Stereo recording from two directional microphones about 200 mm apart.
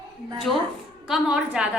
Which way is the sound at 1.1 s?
5° right (ahead or behind).